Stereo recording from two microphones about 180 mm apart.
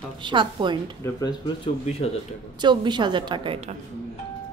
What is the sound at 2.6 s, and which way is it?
A woman's voice, 25° right (ahead or behind).